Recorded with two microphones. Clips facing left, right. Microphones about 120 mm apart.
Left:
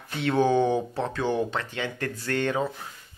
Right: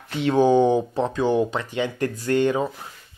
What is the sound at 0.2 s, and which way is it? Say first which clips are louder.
Speech: right 5 dB; 20° right (ahead or behind).